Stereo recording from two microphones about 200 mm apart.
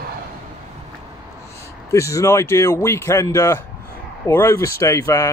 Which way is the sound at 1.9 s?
15° left (ahead or behind).